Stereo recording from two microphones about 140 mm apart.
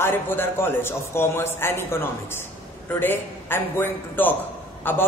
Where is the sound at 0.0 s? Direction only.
15° left (ahead or behind).